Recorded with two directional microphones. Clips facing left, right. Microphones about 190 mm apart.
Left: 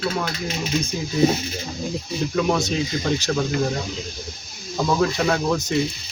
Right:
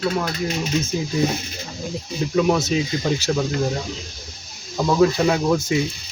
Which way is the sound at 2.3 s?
5° right (ahead or behind).